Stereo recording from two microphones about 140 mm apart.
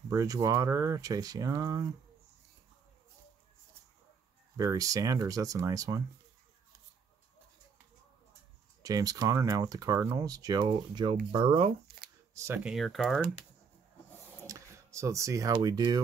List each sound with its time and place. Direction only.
0.1 s speech: 25° right (ahead or behind)
4.6 s speech: 25° right (ahead or behind)
8.8 s speech: 25° right (ahead or behind)
12.4 s speech: 20° right (ahead or behind)
12.6 s speech: centre (ahead or behind)
14.4 s a sound: 20° right (ahead or behind)
15.6 s speech: 30° right (ahead or behind)